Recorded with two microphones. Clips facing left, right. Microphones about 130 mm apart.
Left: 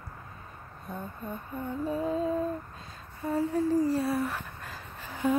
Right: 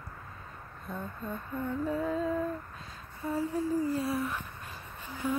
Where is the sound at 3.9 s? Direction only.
65° left (ahead or behind).